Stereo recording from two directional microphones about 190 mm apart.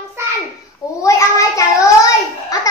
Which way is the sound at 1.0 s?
15° left (ahead or behind).